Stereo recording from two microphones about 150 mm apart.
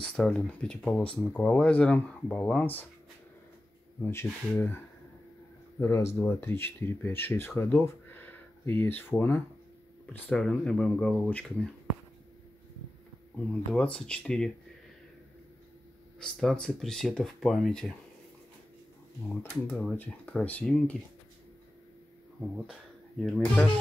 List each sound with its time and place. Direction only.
0.0 s speech: 5° left (ahead or behind)
4.0 s speech: 15° left (ahead or behind)
13.4 s speech: 5° left (ahead or behind)
16.2 s speech: 5° left (ahead or behind)
19.2 s speech: 5° left (ahead or behind)
23.2 s speech: 5° left (ahead or behind)